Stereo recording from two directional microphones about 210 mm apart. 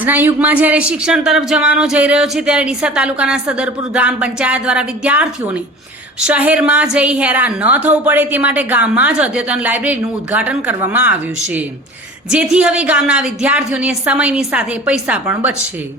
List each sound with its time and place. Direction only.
0.0 s a woman's voice: 10° right (ahead or behind)